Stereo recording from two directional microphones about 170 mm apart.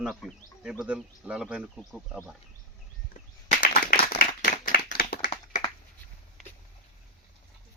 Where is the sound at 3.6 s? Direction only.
55° left (ahead or behind).